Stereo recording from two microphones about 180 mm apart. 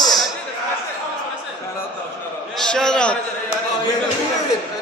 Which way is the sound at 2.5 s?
5° left (ahead or behind).